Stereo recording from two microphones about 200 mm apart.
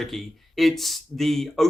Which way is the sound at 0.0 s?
Centre (ahead or behind).